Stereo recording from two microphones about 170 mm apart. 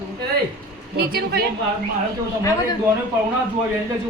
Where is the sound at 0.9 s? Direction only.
65° right (ahead or behind).